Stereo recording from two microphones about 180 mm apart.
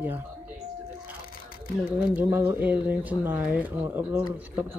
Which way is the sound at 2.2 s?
10° right (ahead or behind).